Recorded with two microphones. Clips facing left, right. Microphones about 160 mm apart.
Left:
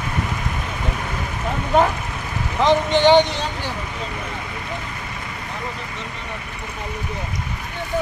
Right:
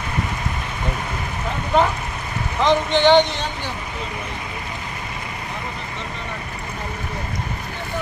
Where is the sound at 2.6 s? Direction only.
10° left (ahead or behind).